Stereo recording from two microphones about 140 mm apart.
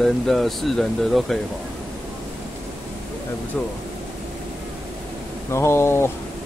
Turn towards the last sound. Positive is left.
turn(degrees=15)  # may be behind; listen again after turning